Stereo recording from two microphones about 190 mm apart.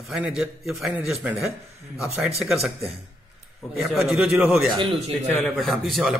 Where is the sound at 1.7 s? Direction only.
35° right (ahead or behind).